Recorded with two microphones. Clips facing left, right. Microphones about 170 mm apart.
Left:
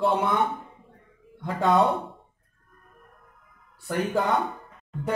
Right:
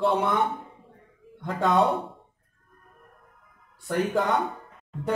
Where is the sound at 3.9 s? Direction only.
5° left (ahead or behind).